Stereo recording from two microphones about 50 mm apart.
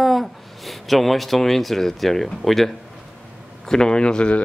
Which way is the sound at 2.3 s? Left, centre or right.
Centre.